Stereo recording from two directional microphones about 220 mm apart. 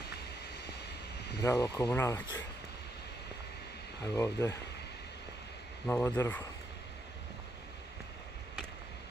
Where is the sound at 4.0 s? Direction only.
15° left (ahead or behind).